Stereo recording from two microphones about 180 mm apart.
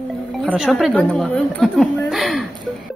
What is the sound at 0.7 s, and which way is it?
Speech, 5° left (ahead or behind).